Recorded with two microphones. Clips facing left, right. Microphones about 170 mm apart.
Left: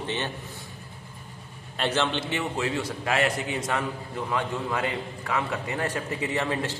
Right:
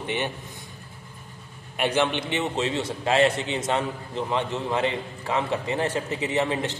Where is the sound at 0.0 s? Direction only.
15° right (ahead or behind).